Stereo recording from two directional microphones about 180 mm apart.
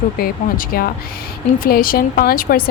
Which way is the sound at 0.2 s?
50° left (ahead or behind).